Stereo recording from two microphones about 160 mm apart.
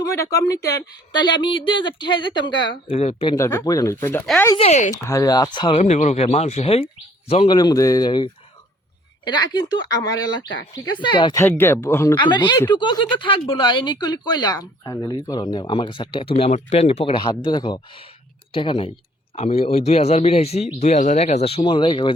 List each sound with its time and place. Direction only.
0.1 s speech: 20° left (ahead or behind); by 3.3 s 40° left (ahead or behind)
3.3 s speech: 20° left (ahead or behind)
4.5 s speech: 40° left (ahead or behind)
5.0 s speech: 20° left (ahead or behind)
5.8 s speech: 45° left (ahead or behind)
7.5 s speech: 25° left (ahead or behind)
11.3 s speech: 15° left (ahead or behind)
12.1 s speech: 30° left (ahead or behind)